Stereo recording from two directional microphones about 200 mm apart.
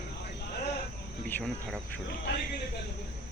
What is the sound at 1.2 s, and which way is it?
Speech, 5° left (ahead or behind).